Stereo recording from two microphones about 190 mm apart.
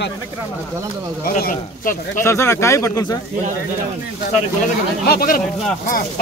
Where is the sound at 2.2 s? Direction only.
15° left (ahead or behind).